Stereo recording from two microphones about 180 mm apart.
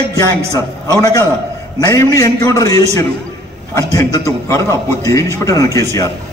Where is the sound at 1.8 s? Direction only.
20° left (ahead or behind).